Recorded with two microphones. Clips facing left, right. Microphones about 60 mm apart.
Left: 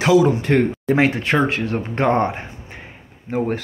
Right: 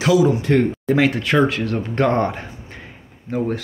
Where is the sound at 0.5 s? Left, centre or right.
Left.